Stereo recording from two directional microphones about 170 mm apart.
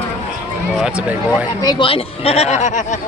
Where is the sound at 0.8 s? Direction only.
5° right (ahead or behind).